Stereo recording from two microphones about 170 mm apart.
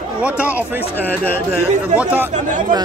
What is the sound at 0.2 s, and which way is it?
Speech, 10° right (ahead or behind).